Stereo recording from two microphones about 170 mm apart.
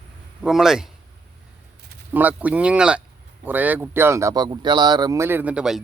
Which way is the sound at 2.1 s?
10° right (ahead or behind).